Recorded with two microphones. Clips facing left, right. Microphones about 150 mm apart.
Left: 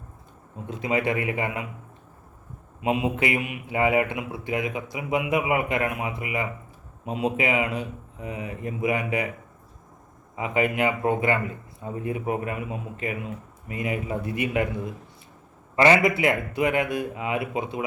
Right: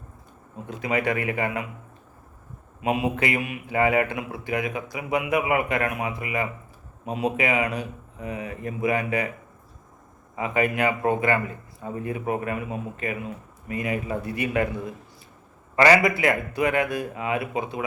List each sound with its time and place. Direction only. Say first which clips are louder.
0.7 s a man's voice: even; 25° left (ahead or behind)
2.8 s a man's voice: even; 25° left (ahead or behind)
10.3 s a man's voice: even; 20° left (ahead or behind)
15.7 s a man's voice: right 1 dB; 25° left (ahead or behind)